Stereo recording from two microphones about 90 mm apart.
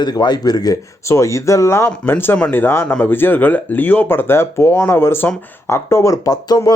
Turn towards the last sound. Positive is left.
turn(degrees=45)  # may be behind; listen again after turning